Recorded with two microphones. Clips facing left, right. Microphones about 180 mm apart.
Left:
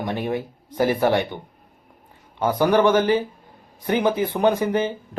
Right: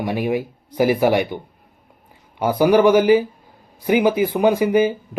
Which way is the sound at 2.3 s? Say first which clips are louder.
Right 3 dB; 10° right (ahead or behind).